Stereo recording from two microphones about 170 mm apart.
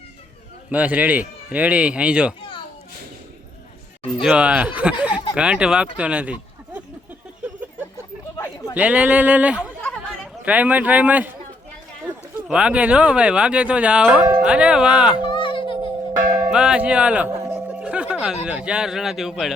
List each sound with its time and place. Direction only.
0.7 s speech: 10° right (ahead or behind)
4.2 s speech: 5° right (ahead or behind)
6.0 s a sound: 5° right (ahead or behind)
8.7 s speech: 10° right (ahead or behind)
12.5 s speech: 5° right (ahead or behind)
15.3 s a sound: 30° left (ahead or behind)
16.5 s speech: 5° right (ahead or behind)